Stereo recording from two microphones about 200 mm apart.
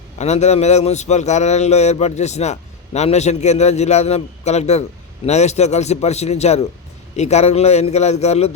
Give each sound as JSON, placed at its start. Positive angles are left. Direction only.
{"t": 0.2, "sound": "speech", "side_deg": 35}